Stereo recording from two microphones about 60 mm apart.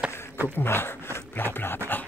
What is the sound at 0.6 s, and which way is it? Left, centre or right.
Speech, left.